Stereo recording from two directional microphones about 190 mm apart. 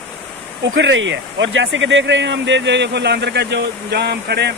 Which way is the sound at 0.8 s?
75° right (ahead or behind).